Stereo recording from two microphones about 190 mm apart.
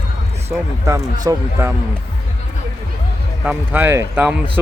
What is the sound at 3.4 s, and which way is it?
Speech, 10° right (ahead or behind).